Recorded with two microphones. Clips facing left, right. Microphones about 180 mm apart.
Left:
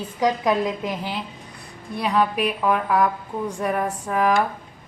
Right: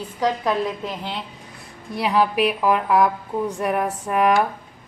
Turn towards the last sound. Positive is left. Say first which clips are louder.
# right 2 dB
turn(degrees=0)  # may be behind; listen again after turning